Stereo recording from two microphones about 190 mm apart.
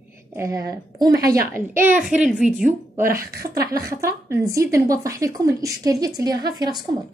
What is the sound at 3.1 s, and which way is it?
Speech, 50° right (ahead or behind).